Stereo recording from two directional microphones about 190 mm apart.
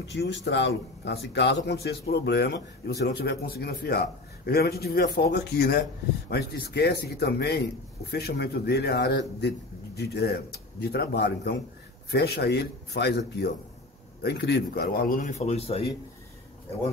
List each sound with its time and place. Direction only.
0.1 s a man's voice: 65° left (ahead or behind)
14.2 s speech: 60° left (ahead or behind); by 15.9 s 30° left (ahead or behind)